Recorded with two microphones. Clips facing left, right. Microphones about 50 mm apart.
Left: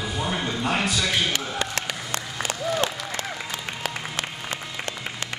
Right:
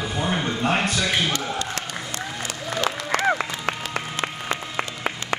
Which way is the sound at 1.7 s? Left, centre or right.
Left.